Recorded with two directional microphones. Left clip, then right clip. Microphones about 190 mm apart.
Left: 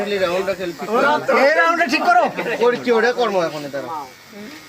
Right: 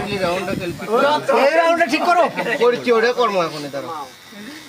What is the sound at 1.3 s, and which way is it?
Speech, 15° right (ahead or behind).